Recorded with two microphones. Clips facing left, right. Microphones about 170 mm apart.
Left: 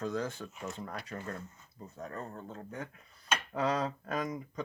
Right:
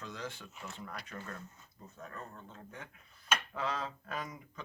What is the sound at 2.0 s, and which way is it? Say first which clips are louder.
Speech: left 6 dB; 40° left (ahead or behind).